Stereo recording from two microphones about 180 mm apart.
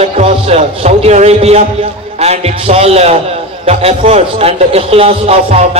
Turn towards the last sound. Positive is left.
turn(degrees=-35)  # may be behind; listen again after turning